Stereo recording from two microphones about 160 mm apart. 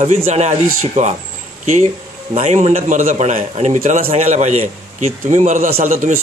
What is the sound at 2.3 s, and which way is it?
Speech, 45° right (ahead or behind).